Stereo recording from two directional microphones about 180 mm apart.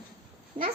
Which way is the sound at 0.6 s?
30° right (ahead or behind).